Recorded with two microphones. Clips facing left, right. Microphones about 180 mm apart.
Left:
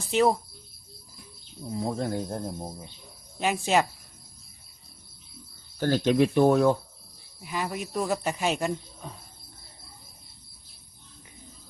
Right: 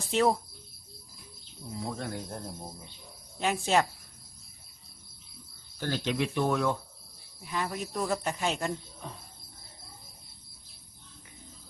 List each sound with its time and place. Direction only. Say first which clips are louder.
0.1 s speech: left 3 dB; centre (ahead or behind)
1.7 s speech: left 7 dB; 35° left (ahead or behind)
3.3 s speech: left 2 dB; 5° left (ahead or behind)
5.8 s speech: left 8 dB; 45° left (ahead or behind)
7.4 s speech: left 2 dB; 10° left (ahead or behind)